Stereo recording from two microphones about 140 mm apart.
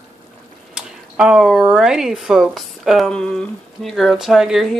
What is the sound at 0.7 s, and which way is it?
A woman's voice, 5° right (ahead or behind).